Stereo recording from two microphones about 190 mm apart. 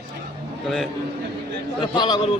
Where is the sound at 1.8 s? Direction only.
25° left (ahead or behind).